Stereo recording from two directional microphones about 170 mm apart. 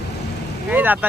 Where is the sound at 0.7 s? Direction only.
10° right (ahead or behind).